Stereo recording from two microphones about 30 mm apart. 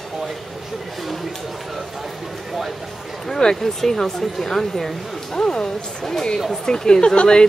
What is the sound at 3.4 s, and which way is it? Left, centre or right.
Speech, left.